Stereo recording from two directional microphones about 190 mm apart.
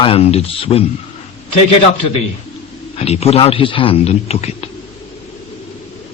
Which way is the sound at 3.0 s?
35° left (ahead or behind).